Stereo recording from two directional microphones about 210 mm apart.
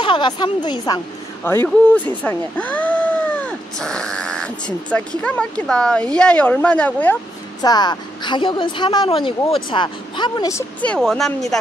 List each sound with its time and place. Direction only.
0.0 s a woman's voice: 20° left (ahead or behind)
2.2 s a sound: 5° left (ahead or behind)
4.9 s speech: 5° left (ahead or behind)
7.6 s a woman's voice: 20° left (ahead or behind)
10.8 s speech: 5° left (ahead or behind)